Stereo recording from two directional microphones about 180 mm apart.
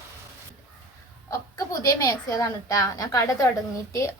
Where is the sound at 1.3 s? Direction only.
20° left (ahead or behind).